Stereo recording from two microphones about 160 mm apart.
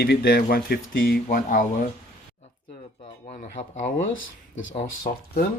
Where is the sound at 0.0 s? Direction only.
90° left; by 1.9 s 55° left (ahead or behind).